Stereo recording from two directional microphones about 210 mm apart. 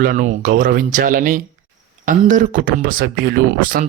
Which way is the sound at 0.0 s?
45° right (ahead or behind).